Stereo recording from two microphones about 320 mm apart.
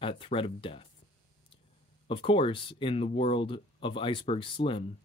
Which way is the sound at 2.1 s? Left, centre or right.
Centre.